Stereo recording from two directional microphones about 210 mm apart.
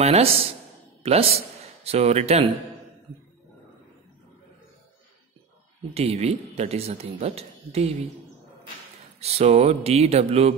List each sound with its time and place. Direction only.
0.0 s a man's voice: 30° right (ahead or behind)
5.9 s speech: 30° right (ahead or behind)
9.2 s speech: 30° right (ahead or behind)